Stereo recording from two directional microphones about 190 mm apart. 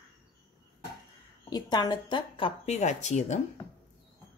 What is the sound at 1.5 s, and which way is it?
Speech, 20° left (ahead or behind).